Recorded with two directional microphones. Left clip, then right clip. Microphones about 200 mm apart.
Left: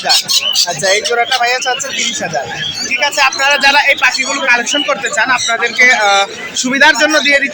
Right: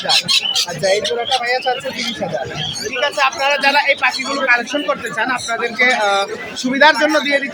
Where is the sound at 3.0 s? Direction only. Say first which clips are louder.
Left 4 dB; centre (ahead or behind).